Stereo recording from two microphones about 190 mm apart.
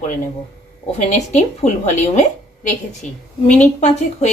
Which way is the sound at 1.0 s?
40° left (ahead or behind).